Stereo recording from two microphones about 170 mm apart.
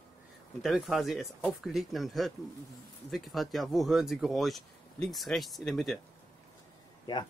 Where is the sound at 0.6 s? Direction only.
Centre (ahead or behind).